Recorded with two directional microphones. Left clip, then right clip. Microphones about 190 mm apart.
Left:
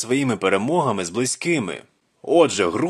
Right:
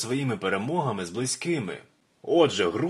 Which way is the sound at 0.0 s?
40° left (ahead or behind).